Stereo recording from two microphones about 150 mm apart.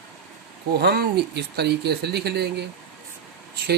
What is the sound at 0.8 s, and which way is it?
Speech, 90° right.